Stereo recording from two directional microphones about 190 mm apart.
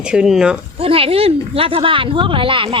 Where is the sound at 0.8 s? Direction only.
30° right (ahead or behind).